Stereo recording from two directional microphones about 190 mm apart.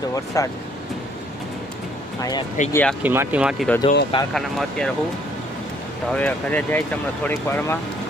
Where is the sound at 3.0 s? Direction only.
10° right (ahead or behind).